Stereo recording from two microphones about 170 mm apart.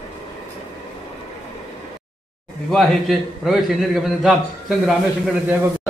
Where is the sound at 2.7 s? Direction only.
Centre (ahead or behind).